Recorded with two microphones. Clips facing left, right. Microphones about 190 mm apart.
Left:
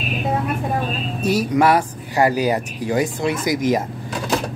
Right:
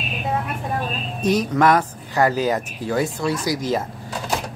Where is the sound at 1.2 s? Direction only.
10° left (ahead or behind).